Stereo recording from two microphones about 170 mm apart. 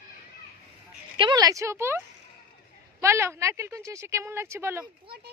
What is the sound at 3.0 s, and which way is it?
Speech, 15° right (ahead or behind).